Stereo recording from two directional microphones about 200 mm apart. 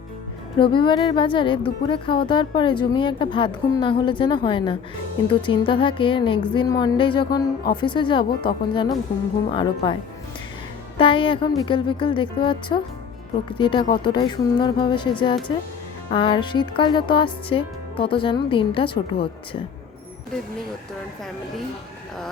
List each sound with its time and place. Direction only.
0.6 s speech: 25° left (ahead or behind)